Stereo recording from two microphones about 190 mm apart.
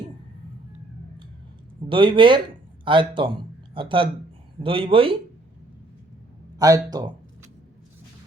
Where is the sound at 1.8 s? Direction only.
25° right (ahead or behind).